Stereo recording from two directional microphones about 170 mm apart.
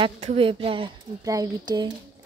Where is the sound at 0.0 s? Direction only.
35° right (ahead or behind).